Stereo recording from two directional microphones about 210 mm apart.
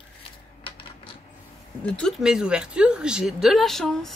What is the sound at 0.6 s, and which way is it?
Coin, 25° left (ahead or behind).